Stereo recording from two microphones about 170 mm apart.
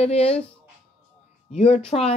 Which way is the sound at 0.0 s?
35° left (ahead or behind).